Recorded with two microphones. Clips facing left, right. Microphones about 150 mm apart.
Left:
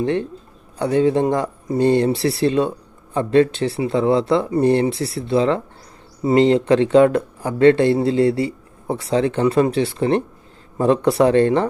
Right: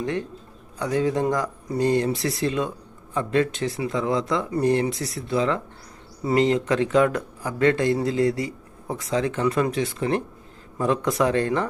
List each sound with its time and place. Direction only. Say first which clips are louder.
0.0 s speech: left 7 dB; 30° left (ahead or behind)